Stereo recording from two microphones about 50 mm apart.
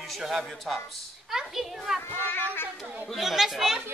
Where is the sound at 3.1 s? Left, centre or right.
Centre.